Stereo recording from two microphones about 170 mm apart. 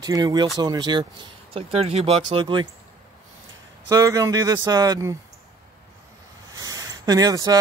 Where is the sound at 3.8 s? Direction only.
20° right (ahead or behind).